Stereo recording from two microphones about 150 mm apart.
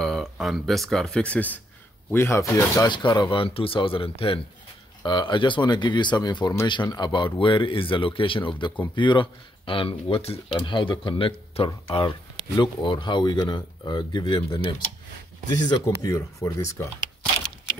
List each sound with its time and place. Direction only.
0.0 s speech: centre (ahead or behind); by 16.7 s 20° left (ahead or behind)